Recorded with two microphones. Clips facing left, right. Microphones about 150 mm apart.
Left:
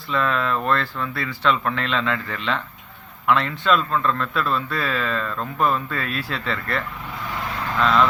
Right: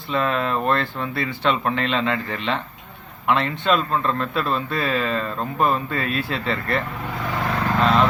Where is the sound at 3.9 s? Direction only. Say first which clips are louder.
Even; 30° right (ahead or behind).